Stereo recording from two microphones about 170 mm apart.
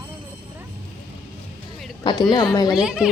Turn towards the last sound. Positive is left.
turn(degrees=-5)  # may be behind; listen again after turning